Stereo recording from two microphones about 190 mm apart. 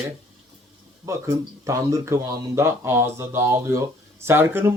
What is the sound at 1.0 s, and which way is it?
A man's voice, 15° right (ahead or behind).